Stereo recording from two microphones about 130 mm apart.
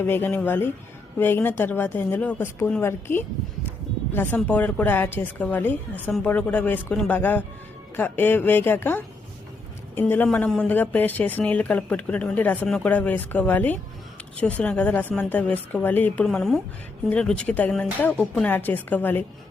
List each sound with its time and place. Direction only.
0.0 s speech: 15° left (ahead or behind)
10.2 s speech: 5° left (ahead or behind)